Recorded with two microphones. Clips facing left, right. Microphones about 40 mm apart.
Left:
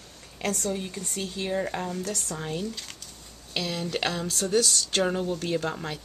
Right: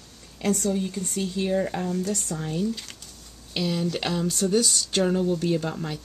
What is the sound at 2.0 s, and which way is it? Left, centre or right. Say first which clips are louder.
Speech: right 4 dB; centre.